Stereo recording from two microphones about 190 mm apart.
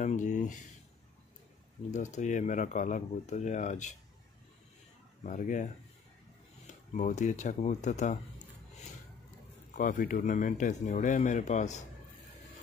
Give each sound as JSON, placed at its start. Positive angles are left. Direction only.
{"t": 0.0, "sound": "speech", "side_deg": 40}
{"t": 1.9, "sound": "speech", "side_deg": 40}
{"t": 5.2, "sound": "speech", "side_deg": 40}
{"t": 6.9, "sound": "speech", "side_deg": 40}
{"t": 9.8, "sound": "speech", "side_deg": 45}